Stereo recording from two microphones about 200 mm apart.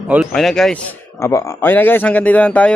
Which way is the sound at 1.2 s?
15° left (ahead or behind).